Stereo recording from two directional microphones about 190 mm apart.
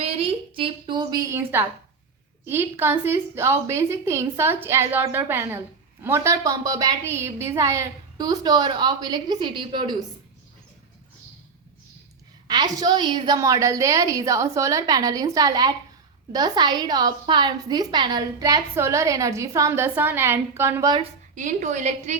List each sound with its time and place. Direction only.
0.0 s a sound: 30° right (ahead or behind); by 1.6 s 10° right (ahead or behind)
2.5 s a woman's voice: 10° right (ahead or behind)
12.5 s a woman's voice: 20° right (ahead or behind)
21.0 s a woman's voice: 40° right (ahead or behind)